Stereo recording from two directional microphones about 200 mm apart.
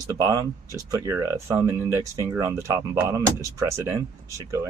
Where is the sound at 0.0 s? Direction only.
15° right (ahead or behind).